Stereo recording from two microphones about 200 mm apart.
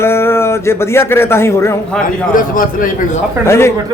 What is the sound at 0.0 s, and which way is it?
A man's voice, 10° left (ahead or behind).